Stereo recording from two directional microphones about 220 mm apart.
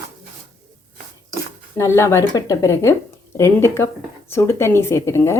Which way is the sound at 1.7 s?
10° left (ahead or behind).